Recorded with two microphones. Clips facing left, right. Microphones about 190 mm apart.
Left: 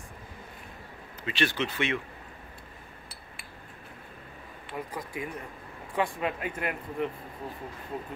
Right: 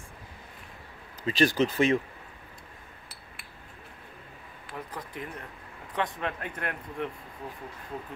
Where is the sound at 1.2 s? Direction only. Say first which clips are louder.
Right 6 dB; 40° right (ahead or behind).